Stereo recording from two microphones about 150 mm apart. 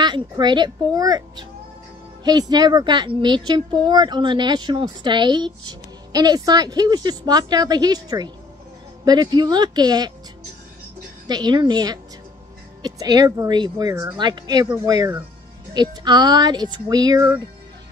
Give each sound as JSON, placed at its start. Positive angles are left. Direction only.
{"t": 0.0, "sound": "speech", "side_deg": -30}
{"t": 11.2, "sound": "speech", "side_deg": -30}